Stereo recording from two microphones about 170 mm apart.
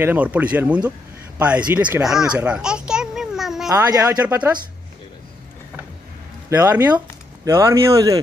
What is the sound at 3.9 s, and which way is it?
Speech, 20° right (ahead or behind).